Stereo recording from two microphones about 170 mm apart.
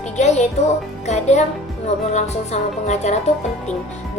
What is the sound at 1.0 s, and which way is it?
Music, 40° left (ahead or behind).